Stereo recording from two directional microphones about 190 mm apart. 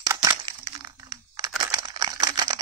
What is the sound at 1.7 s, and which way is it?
Camera, 20° right (ahead or behind).